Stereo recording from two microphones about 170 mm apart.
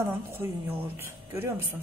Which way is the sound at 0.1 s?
15° right (ahead or behind).